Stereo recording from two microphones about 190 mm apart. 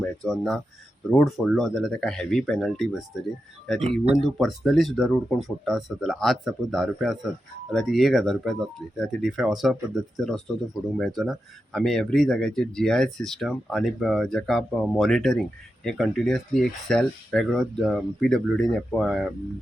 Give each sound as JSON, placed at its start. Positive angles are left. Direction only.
{"t": 0.0, "sound": "speech", "side_deg": 0}
{"t": 3.8, "sound": "speech", "side_deg": -35}
{"t": 4.1, "sound": "speech", "side_deg": 0}